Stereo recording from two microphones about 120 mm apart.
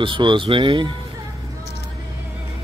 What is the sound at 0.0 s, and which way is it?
Speech, 40° right (ahead or behind).